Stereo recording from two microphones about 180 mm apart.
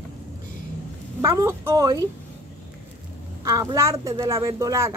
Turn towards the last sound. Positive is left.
turn(degrees=-15)  # may be behind; listen again after turning